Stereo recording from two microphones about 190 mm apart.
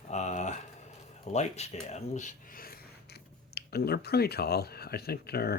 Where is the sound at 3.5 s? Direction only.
55° left (ahead or behind).